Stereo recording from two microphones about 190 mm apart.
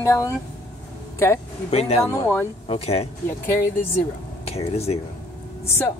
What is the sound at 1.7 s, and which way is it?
Speech, 35° left (ahead or behind).